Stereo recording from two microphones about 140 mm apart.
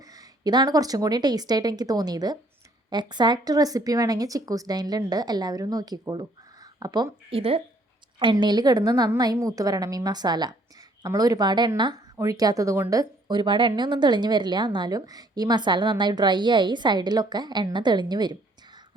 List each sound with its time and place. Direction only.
0.1 s speech: 30° right (ahead or behind)
7.3 s a woman's voice: 40° right (ahead or behind)